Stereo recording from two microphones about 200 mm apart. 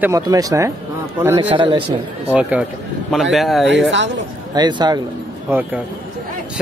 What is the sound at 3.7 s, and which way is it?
Speech, 65° right (ahead or behind).